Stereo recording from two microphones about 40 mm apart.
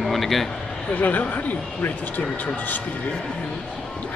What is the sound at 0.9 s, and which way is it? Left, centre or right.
Speech, left.